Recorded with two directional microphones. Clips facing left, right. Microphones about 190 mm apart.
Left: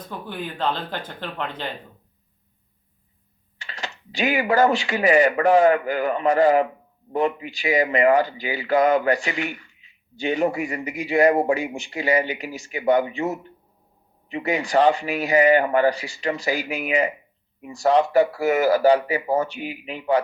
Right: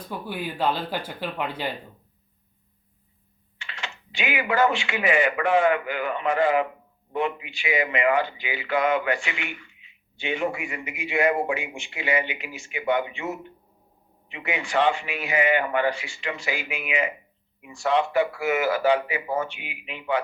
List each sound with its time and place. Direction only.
0.1 s speech: 10° right (ahead or behind)
3.6 s a man's voice: 40° left (ahead or behind)